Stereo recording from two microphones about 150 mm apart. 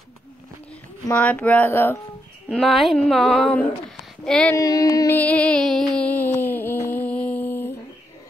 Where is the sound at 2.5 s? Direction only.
5° left (ahead or behind).